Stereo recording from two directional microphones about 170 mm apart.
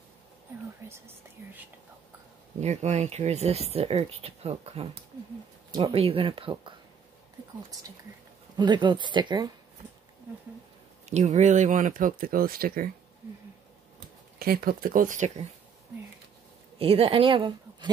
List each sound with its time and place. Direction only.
0.8 s speech: 15° right (ahead or behind)
2.6 s speech: 40° right (ahead or behind)
8.5 s speech: 25° right (ahead or behind)
11.1 s speech: 45° right (ahead or behind)
14.4 s speech: 60° right (ahead or behind); by 15.4 s 45° right (ahead or behind)
16.7 s speech: 35° right (ahead or behind)